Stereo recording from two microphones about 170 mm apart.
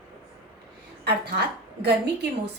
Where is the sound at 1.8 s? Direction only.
75° right (ahead or behind).